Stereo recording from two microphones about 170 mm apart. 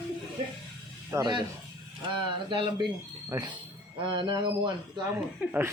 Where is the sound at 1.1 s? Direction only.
15° right (ahead or behind).